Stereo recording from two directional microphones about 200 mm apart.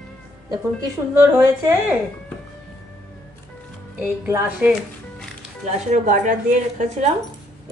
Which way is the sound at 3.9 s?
10° right (ahead or behind).